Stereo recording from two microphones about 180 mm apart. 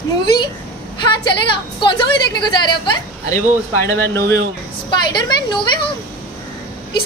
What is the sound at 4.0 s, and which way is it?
Speech, 15° left (ahead or behind).